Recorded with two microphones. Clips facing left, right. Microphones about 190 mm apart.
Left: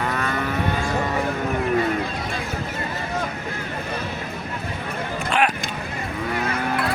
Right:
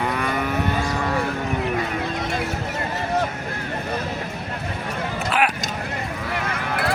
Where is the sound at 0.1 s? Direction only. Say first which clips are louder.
Right 1 dB; 10° right (ahead or behind).